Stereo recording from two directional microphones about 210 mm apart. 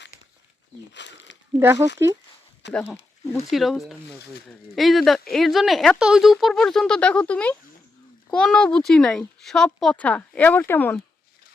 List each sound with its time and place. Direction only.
0.9 s a sound: 55° left (ahead or behind)
1.5 s speech: 15° right (ahead or behind)
2.7 s speech: 10° left (ahead or behind)